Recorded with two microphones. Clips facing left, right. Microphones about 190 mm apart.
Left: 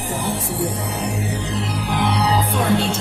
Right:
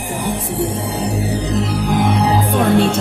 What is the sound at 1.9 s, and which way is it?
Music, 50° right (ahead or behind).